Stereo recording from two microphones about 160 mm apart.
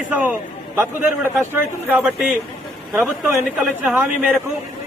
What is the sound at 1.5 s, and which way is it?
A man's voice, 10° right (ahead or behind).